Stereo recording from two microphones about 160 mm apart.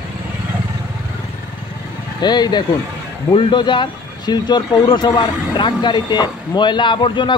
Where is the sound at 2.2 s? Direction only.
25° left (ahead or behind).